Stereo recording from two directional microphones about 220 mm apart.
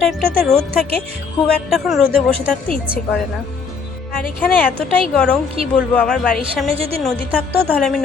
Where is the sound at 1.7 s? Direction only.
Centre (ahead or behind).